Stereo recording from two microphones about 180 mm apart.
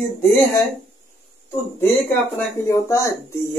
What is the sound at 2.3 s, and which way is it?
A man's voice, 15° left (ahead or behind).